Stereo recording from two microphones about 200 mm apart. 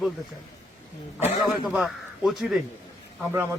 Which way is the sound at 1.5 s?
5° right (ahead or behind).